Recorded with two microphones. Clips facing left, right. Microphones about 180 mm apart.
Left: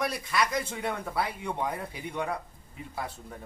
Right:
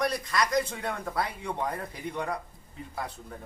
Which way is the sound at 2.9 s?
5° left (ahead or behind).